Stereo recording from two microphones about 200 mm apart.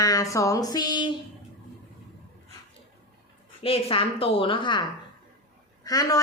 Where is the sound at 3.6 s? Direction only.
30° left (ahead or behind).